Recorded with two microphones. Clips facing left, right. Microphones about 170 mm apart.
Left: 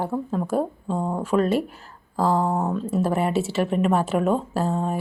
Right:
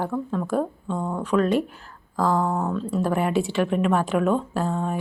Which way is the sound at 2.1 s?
30° left (ahead or behind).